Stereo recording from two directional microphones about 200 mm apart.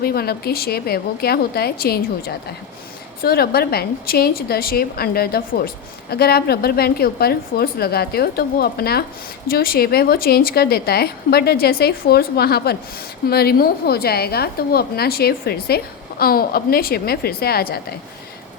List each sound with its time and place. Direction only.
0.0 s a woman's voice: 50° left (ahead or behind)